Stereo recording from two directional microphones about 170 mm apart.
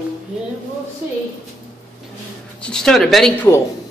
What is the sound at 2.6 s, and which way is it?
Speech, 5° left (ahead or behind).